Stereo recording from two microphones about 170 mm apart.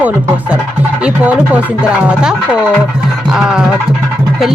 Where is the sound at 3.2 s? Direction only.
5° right (ahead or behind).